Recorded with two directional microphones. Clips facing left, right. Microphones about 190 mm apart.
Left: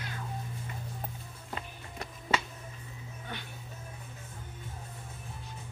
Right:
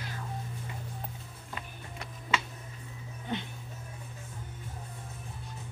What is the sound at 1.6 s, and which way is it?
Music, 40° left (ahead or behind).